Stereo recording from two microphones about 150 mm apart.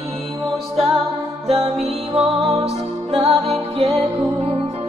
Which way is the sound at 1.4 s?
40° right (ahead or behind).